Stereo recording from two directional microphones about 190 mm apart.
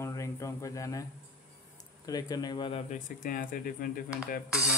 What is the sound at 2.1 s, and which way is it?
Speech, 20° left (ahead or behind).